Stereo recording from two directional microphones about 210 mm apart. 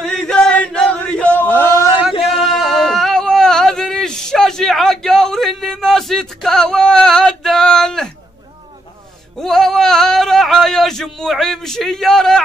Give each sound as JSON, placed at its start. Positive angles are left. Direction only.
{"t": 0.0, "sound": "chant", "side_deg": 5}
{"t": 2.2, "sound": "a sound", "side_deg": 0}
{"t": 9.4, "sound": "male singing", "side_deg": 0}